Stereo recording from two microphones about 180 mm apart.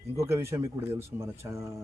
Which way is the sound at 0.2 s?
15° right (ahead or behind).